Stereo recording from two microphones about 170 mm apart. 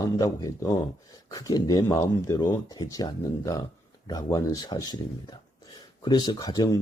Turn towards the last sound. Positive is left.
turn(degrees=25)  # may be behind; listen again after turning